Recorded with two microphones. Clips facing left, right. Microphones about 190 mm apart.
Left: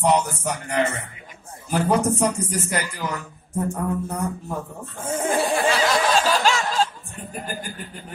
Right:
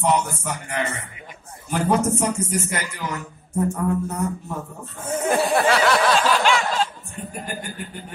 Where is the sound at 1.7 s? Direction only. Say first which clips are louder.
Even; 35° left (ahead or behind).